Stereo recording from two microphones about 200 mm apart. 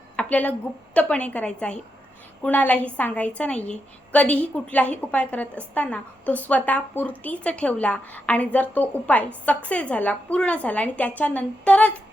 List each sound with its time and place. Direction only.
0.2 s a woman's voice: 5° left (ahead or behind)